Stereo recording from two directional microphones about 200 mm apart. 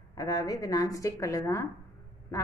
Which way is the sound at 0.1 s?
20° left (ahead or behind).